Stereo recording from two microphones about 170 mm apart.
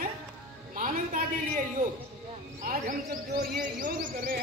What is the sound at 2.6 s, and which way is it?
A woman's voice, 55° right (ahead or behind).